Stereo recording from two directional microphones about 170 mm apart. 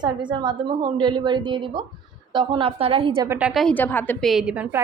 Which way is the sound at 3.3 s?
10° right (ahead or behind).